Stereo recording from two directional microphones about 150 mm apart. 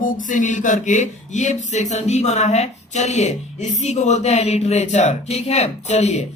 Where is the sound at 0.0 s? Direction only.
60° left (ahead or behind).